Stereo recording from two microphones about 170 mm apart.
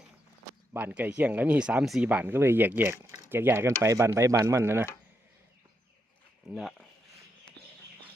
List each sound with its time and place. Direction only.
0.7 s speech: 10° right (ahead or behind)
6.5 s speech: centre (ahead or behind)